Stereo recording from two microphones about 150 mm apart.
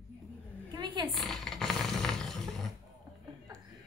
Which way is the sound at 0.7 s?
30° right (ahead or behind).